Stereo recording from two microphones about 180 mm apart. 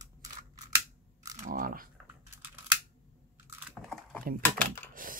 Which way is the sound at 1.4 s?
50° right (ahead or behind).